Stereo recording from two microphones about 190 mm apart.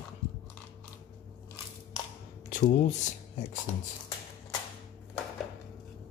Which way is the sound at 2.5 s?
40° left (ahead or behind).